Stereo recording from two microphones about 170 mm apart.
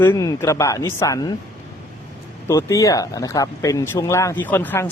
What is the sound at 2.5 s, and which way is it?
A man's voice, 20° left (ahead or behind).